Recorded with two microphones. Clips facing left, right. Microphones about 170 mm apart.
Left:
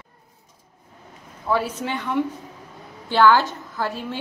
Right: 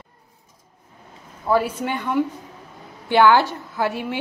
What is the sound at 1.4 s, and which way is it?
A woman's voice, 10° right (ahead or behind).